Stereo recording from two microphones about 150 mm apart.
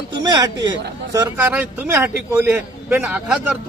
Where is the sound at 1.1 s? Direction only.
25° right (ahead or behind).